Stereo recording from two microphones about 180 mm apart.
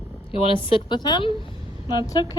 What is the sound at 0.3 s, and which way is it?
Speech, 30° left (ahead or behind).